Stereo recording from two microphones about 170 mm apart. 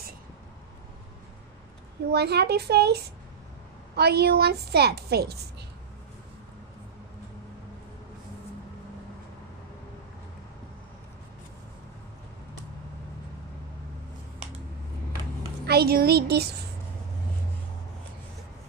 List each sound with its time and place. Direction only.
2.1 s a woman's voice: 75° right (ahead or behind)
15.6 s a woman's voice: 70° right (ahead or behind)